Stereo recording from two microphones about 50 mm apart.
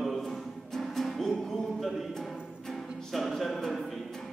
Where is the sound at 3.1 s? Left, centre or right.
Centre.